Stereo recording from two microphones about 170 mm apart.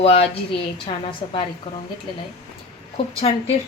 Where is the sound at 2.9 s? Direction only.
35° left (ahead or behind).